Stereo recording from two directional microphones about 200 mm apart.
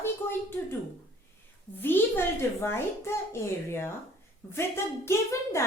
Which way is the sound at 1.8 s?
10° left (ahead or behind).